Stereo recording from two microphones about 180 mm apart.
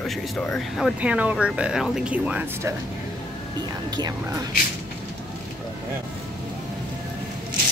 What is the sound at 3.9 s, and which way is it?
Speech, 25° right (ahead or behind).